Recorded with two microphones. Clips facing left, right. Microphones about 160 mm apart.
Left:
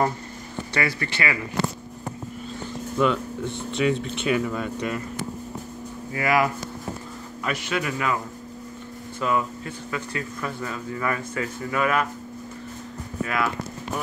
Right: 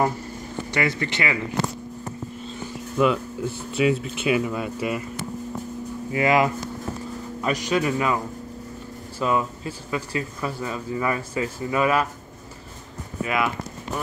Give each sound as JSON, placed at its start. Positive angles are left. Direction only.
{"t": 0.7, "sound": "speech", "side_deg": -20}
{"t": 3.0, "sound": "speech", "side_deg": -5}
{"t": 6.1, "sound": "speech", "side_deg": -20}
{"t": 7.4, "sound": "speech", "side_deg": -35}
{"t": 7.8, "sound": "speech", "side_deg": -25}
{"t": 9.2, "sound": "speech", "side_deg": -25}
{"t": 13.2, "sound": "speech", "side_deg": -15}